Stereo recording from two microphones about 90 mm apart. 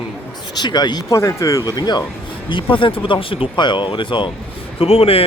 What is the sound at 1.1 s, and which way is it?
Speech, 35° left (ahead or behind).